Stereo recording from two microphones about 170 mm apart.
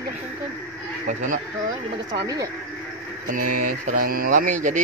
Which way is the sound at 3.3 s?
55° right (ahead or behind).